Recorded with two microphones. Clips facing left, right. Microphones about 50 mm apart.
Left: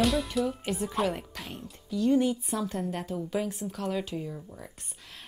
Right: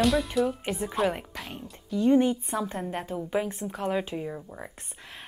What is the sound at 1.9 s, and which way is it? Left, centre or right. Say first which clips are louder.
A woman's voice: right 3 dB; right.